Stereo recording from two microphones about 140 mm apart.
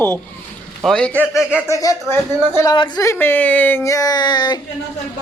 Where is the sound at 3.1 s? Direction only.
15° left (ahead or behind); by 4.6 s 30° left (ahead or behind).